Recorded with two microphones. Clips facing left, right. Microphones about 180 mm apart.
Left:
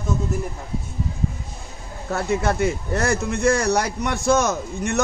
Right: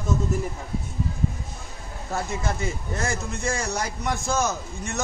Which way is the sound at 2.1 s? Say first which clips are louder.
Left 7 dB; 65° left (ahead or behind).